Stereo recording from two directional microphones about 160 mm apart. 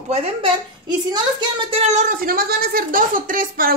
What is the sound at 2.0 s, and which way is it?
Speech, 60° right (ahead or behind).